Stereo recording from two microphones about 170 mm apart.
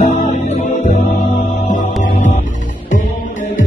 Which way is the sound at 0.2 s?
45° left (ahead or behind).